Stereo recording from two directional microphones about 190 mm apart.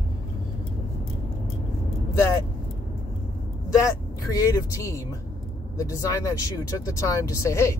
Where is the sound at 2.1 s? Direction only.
15° left (ahead or behind).